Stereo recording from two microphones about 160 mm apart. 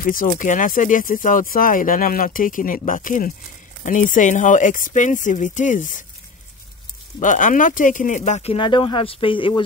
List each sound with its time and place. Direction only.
0.0 s speech: 60° left (ahead or behind)
7.2 s speech: 50° left (ahead or behind); by 9.7 s 30° left (ahead or behind)